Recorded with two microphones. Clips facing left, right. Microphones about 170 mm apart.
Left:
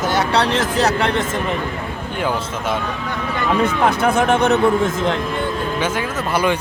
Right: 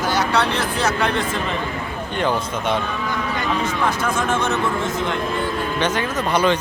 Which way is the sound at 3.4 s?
60° left (ahead or behind).